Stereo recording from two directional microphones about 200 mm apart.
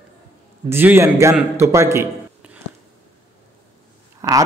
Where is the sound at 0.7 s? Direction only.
10° right (ahead or behind).